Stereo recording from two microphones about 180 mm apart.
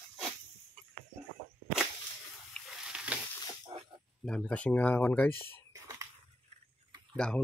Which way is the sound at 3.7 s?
25° right (ahead or behind).